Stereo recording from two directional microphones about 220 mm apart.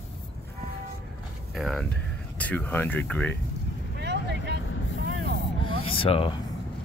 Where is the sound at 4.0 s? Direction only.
50° right (ahead or behind).